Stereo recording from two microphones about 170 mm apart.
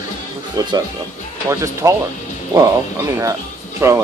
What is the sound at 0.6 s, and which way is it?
Speech, 20° right (ahead or behind).